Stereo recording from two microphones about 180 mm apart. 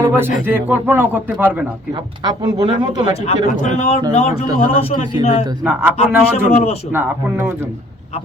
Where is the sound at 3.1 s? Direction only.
35° left (ahead or behind).